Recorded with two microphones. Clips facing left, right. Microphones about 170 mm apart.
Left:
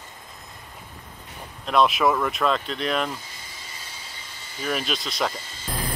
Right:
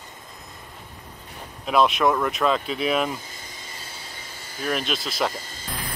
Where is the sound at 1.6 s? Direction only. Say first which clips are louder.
Even; centre (ahead or behind).